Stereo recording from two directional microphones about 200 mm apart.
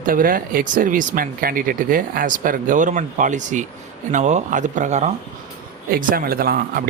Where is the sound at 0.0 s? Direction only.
45° right (ahead or behind).